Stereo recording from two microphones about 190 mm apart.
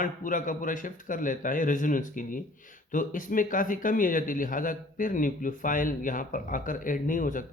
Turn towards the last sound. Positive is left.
turn(degrees=45)  # may be behind; listen again after turning